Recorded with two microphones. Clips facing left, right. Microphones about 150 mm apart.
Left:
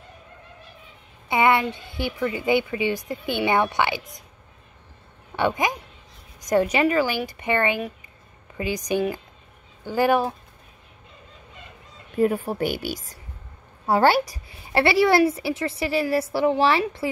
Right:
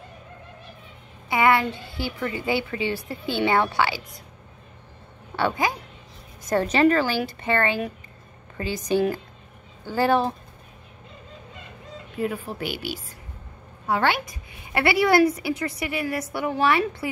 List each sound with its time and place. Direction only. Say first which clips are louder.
1.3 s a woman's voice: even; 20° left (ahead or behind)
5.3 s a woman's voice: left 1 dB; 20° left (ahead or behind)
12.2 s a woman's voice: left 7 dB; 40° left (ahead or behind); by 17.1 s 25° left (ahead or behind)